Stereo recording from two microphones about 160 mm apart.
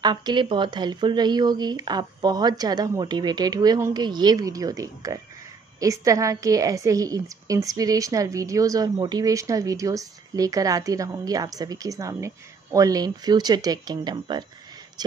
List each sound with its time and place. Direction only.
0.0 s a woman's voice: 25° right (ahead or behind)